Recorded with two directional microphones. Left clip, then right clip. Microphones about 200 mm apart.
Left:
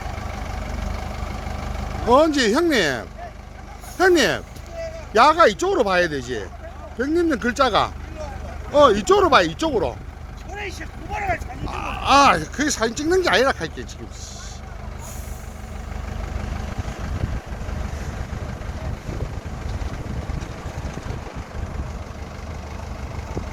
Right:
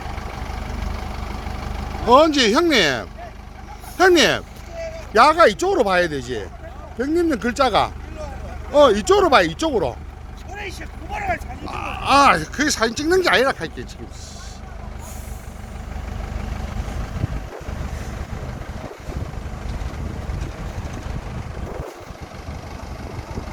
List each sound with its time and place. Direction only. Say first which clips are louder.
1.3 s vehicle: even; 25° left (ahead or behind)
2.0 s speech: right 3 dB; 5° left (ahead or behind)
10.5 s vehicle: even; 25° right (ahead or behind)
11.6 s speech: even; centre (ahead or behind)